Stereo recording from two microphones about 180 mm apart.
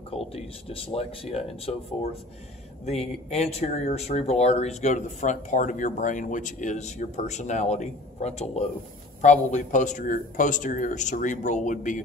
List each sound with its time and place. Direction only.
0.1 s speech: 35° left (ahead or behind)
2.8 s a man's voice: 35° left (ahead or behind)